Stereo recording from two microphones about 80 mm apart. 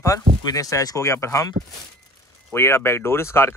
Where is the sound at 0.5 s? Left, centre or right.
Left.